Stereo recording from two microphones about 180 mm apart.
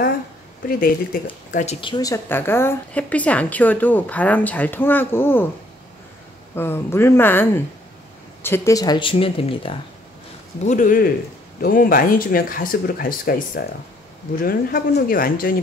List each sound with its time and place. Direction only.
0.7 s speech: 50° left (ahead or behind)
1.8 s a woman's voice: 25° left (ahead or behind)
6.5 s a woman's voice: 10° left (ahead or behind); by 9.8 s 30° left (ahead or behind)
10.6 s speech: 45° left (ahead or behind)